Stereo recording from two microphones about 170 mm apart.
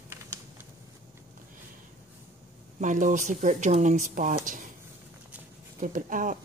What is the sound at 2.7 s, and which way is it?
Speech, 50° right (ahead or behind).